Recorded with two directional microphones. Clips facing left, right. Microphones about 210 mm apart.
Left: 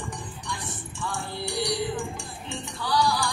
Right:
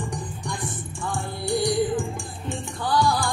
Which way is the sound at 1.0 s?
50° right (ahead or behind).